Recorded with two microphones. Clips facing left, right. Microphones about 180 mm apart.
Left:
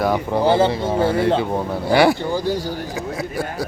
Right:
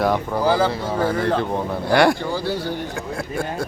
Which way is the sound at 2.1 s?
15° left (ahead or behind).